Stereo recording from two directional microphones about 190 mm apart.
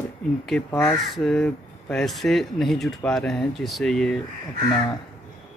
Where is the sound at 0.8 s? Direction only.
Centre (ahead or behind).